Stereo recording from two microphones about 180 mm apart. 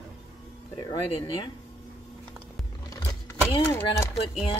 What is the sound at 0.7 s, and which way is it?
Speech, 30° left (ahead or behind).